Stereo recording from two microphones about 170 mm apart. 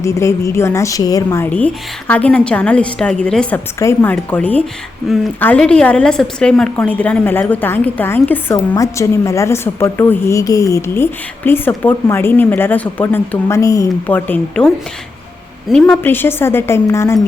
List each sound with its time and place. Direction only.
0.0 s a woman's voice: 15° left (ahead or behind)
3.8 s a woman's voice: 15° left (ahead or behind)
15.7 s a woman's voice: 5° left (ahead or behind)